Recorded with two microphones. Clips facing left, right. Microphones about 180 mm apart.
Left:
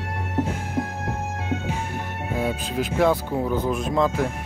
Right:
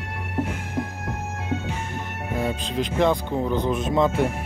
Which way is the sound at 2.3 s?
5° left (ahead or behind).